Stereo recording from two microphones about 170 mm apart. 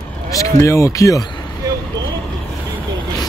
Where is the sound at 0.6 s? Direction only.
15° left (ahead or behind).